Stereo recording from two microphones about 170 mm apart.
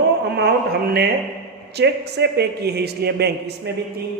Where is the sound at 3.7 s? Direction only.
80° right.